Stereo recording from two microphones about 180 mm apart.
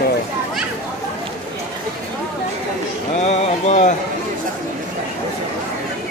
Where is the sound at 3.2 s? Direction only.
40° left (ahead or behind).